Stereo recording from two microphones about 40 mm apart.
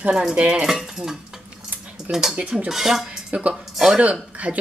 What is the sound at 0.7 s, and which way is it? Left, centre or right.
Speech, centre.